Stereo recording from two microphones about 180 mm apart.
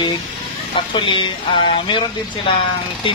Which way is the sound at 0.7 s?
30° left (ahead or behind).